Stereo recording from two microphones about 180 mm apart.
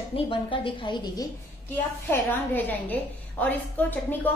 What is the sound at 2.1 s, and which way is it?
A woman's voice, 10° left (ahead or behind).